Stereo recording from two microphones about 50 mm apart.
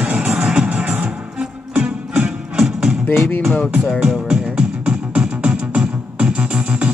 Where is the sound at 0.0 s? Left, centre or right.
Right.